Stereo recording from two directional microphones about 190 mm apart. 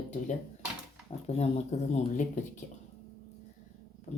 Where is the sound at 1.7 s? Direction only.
35° left (ahead or behind).